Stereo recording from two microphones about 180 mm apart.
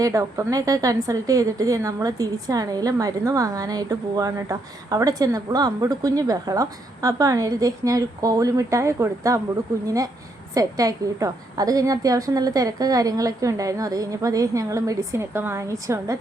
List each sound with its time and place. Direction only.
0.0 s a woman's voice: 20° right (ahead or behind)